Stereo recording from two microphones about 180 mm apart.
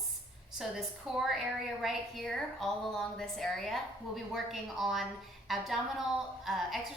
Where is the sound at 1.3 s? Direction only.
Centre (ahead or behind).